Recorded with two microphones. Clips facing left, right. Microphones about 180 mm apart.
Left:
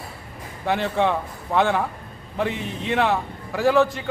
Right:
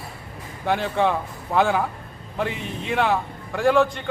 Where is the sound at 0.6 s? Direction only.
Centre (ahead or behind).